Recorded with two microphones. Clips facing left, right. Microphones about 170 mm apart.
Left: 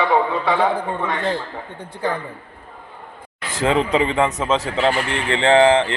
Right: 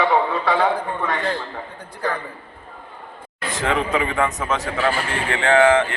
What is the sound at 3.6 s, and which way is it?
A man's voice, 30° left (ahead or behind).